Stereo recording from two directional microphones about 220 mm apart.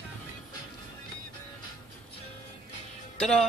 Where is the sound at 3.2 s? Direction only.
Centre (ahead or behind).